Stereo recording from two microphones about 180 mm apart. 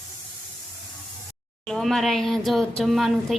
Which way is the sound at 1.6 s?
Centre (ahead or behind).